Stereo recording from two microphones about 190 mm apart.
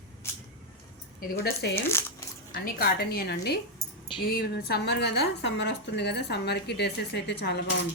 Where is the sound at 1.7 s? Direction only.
10° left (ahead or behind).